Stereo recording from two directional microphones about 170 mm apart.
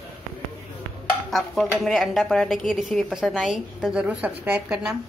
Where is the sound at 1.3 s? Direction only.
Centre (ahead or behind).